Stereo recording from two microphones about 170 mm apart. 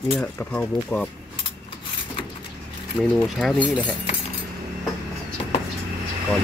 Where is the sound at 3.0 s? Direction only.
5° right (ahead or behind).